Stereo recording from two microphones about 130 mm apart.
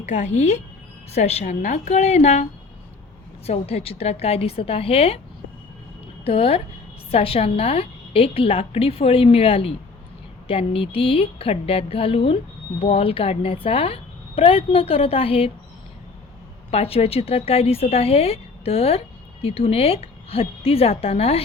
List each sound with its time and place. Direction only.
0.0 s speech: 60° left (ahead or behind)
6.2 s speech: 50° left (ahead or behind)
16.7 s speech: 50° left (ahead or behind)